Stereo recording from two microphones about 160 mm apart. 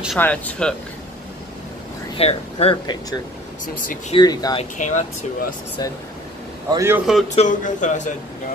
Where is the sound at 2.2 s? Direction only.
40° left (ahead or behind).